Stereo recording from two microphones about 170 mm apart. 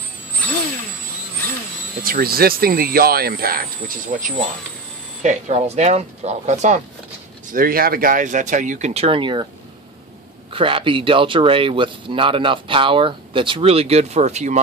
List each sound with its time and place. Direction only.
2.0 s speech: 60° right (ahead or behind)
4.1 s speech: 50° right (ahead or behind)
7.5 s speech: 60° right (ahead or behind); by 9.5 s 30° right (ahead or behind)
10.5 s speech: 30° right (ahead or behind)